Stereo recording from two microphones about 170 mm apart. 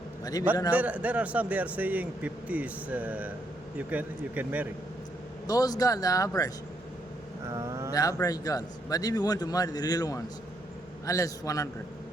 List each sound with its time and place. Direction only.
0.7 s speech: 10° right (ahead or behind)
5.5 s a man's voice: 20° left (ahead or behind)
7.4 s vehicle: 20° right (ahead or behind)
7.9 s a man's voice: 20° left (ahead or behind)